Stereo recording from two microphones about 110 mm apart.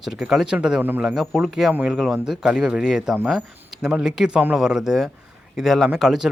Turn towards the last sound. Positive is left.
turn(degrees=-5)  # may be behind; listen again after turning